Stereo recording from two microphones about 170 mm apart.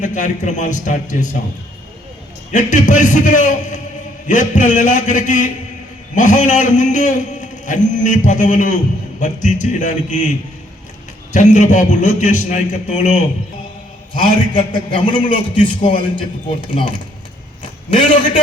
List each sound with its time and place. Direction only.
0.0 s a man's voice: 45° left (ahead or behind)
2.5 s a man's voice: 45° left (ahead or behind)
14.1 s a man's voice: 30° left (ahead or behind)